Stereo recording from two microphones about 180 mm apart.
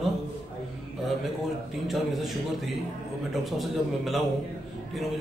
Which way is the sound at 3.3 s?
Centre (ahead or behind).